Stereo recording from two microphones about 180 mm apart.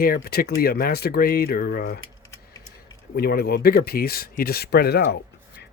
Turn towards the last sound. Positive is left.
turn(degrees=60)  # may be behind; listen again after turning